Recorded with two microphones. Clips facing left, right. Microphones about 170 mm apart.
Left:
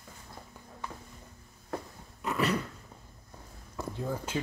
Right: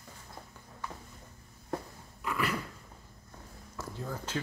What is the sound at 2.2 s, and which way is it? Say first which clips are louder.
Dog: left 4 dB; 25° left (ahead or behind).